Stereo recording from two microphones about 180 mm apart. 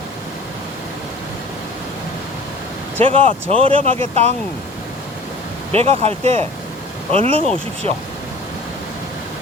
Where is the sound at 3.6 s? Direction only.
30° right (ahead or behind).